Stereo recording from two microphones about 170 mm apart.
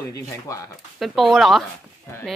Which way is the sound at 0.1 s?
20° left (ahead or behind).